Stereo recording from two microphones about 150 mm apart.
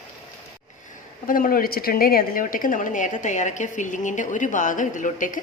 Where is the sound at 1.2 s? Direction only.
65° left (ahead or behind).